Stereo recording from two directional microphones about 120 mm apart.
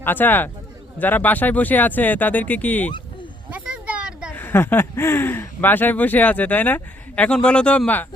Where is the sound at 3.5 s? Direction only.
10° right (ahead or behind).